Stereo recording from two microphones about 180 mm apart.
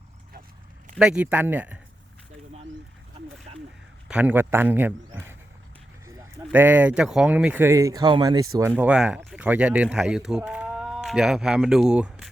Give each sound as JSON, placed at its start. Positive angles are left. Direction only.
{"t": 0.9, "sound": "speech", "side_deg": -5}
{"t": 3.5, "sound": "a sound", "side_deg": -35}
{"t": 4.1, "sound": "a man's voice", "side_deg": -10}
{"t": 8.7, "sound": "speech", "side_deg": -5}